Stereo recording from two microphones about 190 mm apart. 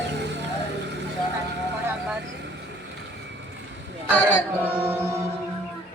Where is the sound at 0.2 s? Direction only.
65° right (ahead or behind).